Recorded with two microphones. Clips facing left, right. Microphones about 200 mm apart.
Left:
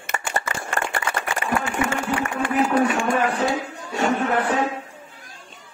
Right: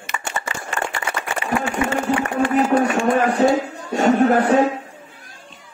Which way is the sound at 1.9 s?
35° right (ahead or behind).